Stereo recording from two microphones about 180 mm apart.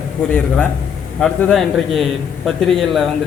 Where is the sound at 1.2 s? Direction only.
5° left (ahead or behind).